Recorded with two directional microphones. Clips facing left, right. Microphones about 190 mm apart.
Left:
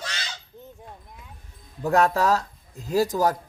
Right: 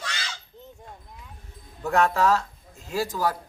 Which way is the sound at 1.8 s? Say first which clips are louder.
Left 1 dB; 35° left (ahead or behind).